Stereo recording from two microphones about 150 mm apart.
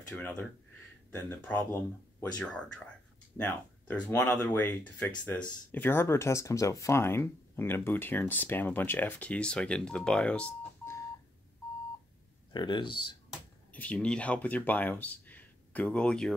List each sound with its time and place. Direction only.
0.1 s speech: 10° left (ahead or behind)
12.5 s speech: 30° left (ahead or behind)
13.3 s speech: 10° left (ahead or behind)